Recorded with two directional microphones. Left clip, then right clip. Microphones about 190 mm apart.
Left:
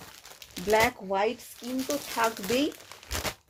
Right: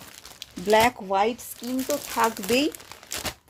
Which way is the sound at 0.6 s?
35° right (ahead or behind).